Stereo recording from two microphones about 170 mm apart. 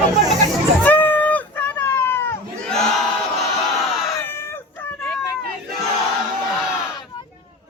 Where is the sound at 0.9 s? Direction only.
10° left (ahead or behind).